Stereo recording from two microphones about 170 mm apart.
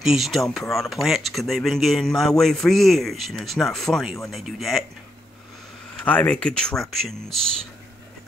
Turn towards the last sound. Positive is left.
turn(degrees=0)  # may be behind; listen again after turning